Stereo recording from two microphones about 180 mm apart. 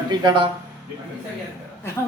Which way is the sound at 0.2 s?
25° right (ahead or behind).